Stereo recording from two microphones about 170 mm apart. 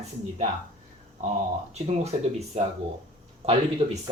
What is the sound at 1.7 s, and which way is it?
Speech, 40° right (ahead or behind).